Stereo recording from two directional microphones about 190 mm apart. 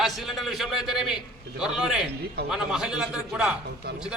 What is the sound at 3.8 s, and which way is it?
Speech, 55° right (ahead or behind).